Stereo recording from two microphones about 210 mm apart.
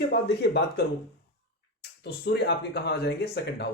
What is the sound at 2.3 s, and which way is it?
Speech, 50° left (ahead or behind).